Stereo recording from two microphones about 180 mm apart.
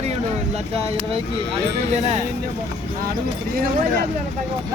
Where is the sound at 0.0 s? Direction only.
40° right (ahead or behind).